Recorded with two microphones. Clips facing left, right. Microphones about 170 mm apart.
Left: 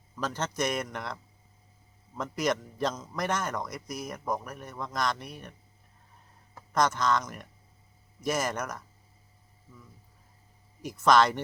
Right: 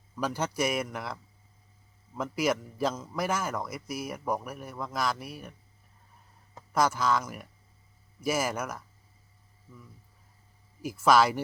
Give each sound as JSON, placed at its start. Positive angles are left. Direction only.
{"t": 0.2, "sound": "a man's voice", "side_deg": -10}
{"t": 6.7, "sound": "a man's voice", "side_deg": -5}
{"t": 10.8, "sound": "a man's voice", "side_deg": -5}